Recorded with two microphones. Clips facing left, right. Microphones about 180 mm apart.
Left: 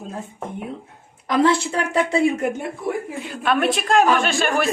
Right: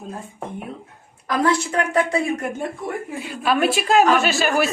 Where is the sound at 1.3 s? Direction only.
25° left (ahead or behind).